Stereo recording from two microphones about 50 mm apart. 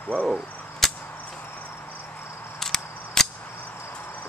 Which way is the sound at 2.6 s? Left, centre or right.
Centre.